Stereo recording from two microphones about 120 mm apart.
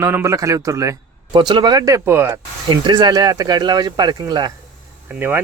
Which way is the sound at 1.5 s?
35° right (ahead or behind).